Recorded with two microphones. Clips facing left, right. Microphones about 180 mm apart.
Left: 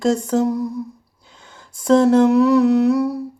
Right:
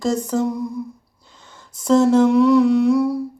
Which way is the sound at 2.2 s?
5° left (ahead or behind).